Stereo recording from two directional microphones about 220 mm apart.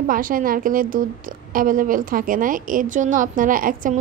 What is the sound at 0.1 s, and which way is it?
A woman's voice, 40° right (ahead or behind).